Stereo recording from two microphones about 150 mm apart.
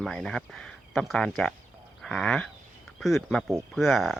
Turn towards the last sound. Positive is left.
turn(degrees=0)  # may be behind; listen again after turning